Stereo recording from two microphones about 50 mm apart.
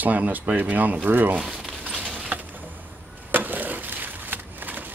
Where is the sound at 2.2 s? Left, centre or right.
Right.